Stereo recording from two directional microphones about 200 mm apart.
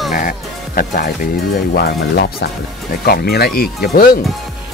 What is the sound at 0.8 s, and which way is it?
Speech, 45° left (ahead or behind).